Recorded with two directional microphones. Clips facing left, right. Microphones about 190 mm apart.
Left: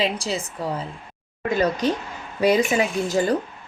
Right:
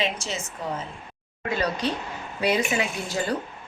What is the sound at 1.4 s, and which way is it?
A woman's voice, 45° left (ahead or behind).